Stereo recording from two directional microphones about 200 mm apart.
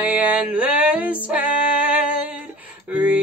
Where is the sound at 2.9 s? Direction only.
10° right (ahead or behind).